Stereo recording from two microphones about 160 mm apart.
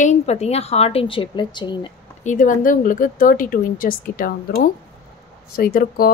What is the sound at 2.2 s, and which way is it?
A woman's voice, 50° left (ahead or behind).